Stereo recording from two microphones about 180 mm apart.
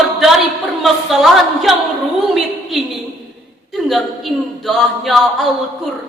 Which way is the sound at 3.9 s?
Centre (ahead or behind).